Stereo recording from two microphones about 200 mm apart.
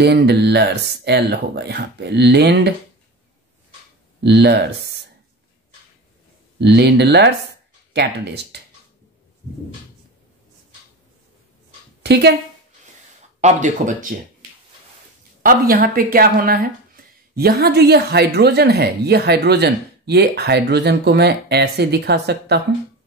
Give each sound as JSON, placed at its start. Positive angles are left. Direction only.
{"t": 0.0, "sound": "speech", "side_deg": -55}
{"t": 4.2, "sound": "speech", "side_deg": -55}
{"t": 6.6, "sound": "speech", "side_deg": -55}
{"t": 12.0, "sound": "speech", "side_deg": -55}
{"t": 13.4, "sound": "speech", "side_deg": -35}
{"t": 15.4, "sound": "speech", "side_deg": -45}